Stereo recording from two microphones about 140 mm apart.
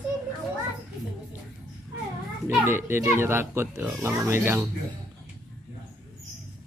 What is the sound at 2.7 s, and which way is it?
Speech, 15° right (ahead or behind).